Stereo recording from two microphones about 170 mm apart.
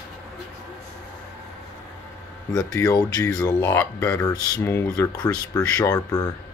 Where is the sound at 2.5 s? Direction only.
20° left (ahead or behind).